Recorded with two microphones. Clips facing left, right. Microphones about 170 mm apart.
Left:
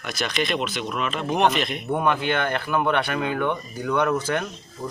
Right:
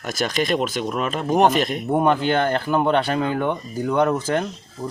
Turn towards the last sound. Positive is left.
turn(degrees=-30)  # may be behind; listen again after turning